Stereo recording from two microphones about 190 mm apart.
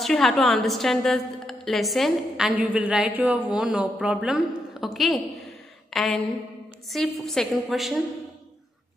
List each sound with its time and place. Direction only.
0.0 s a woman's voice: centre (ahead or behind)